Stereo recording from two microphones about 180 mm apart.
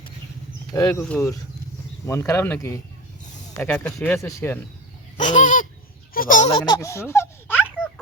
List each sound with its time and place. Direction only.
0.7 s speech: 20° left (ahead or behind)
1.0 s speech: 5° left (ahead or behind)
5.1 s fowl: 45° left (ahead or behind)
6.1 s speech: 45° left (ahead or behind)
6.5 s speech: 25° left (ahead or behind)